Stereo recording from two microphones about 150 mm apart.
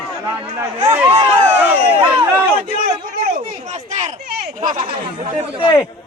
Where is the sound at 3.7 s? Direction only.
50° right (ahead or behind).